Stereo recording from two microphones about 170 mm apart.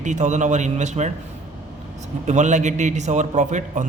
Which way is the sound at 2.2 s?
45° right (ahead or behind).